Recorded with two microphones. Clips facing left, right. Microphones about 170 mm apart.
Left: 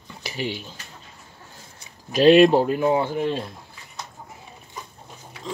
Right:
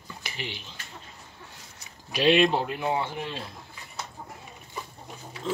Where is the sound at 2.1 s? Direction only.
45° left (ahead or behind).